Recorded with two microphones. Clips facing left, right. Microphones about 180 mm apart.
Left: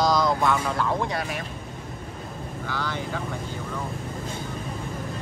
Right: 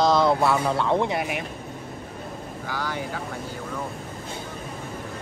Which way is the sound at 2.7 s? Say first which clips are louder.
Right 1 dB; 10° right (ahead or behind).